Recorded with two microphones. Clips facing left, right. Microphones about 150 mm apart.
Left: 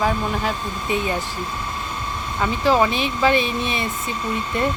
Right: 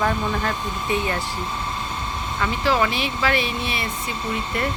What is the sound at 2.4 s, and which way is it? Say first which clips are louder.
Speech: left 3 dB; 20° left (ahead or behind).